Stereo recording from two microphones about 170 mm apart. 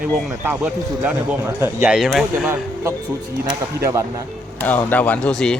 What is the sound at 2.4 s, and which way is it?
A man's voice, 15° right (ahead or behind).